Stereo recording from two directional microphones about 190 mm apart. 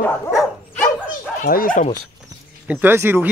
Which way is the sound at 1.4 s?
50° left (ahead or behind).